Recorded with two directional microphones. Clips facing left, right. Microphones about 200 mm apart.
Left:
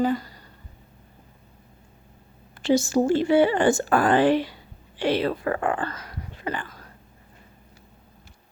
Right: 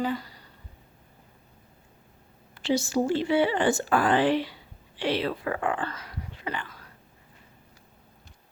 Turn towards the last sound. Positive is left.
turn(degrees=45)  # may be behind; listen again after turning